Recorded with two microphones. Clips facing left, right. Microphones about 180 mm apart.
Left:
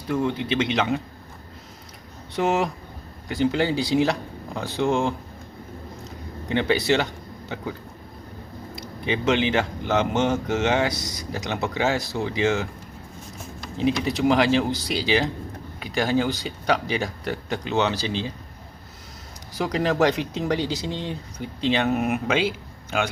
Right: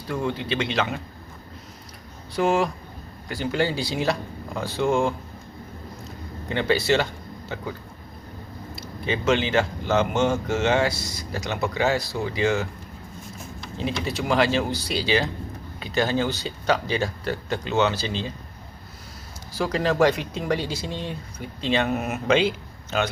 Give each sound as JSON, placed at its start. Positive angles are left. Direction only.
{"t": 0.1, "sound": "speech", "side_deg": 20}
{"t": 2.3, "sound": "speech", "side_deg": 20}
{"t": 6.5, "sound": "speech", "side_deg": 15}
{"t": 8.7, "sound": "speech", "side_deg": 15}
{"t": 13.7, "sound": "speech", "side_deg": 15}
{"t": 19.5, "sound": "speech", "side_deg": 20}